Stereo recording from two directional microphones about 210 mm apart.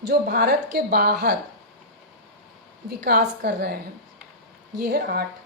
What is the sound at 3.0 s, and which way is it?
A woman's voice, 45° right (ahead or behind).